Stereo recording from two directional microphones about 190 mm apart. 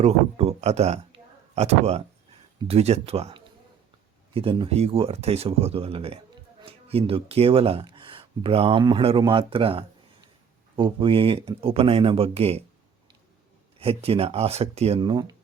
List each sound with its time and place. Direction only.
0.0 s a sound: 30° right (ahead or behind)
2.6 s speech: 30° right (ahead or behind)
13.7 s speech: 30° right (ahead or behind)